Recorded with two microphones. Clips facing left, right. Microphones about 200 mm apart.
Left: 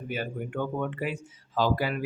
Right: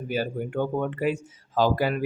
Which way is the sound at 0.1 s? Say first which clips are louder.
Right 5 dB; 35° right (ahead or behind).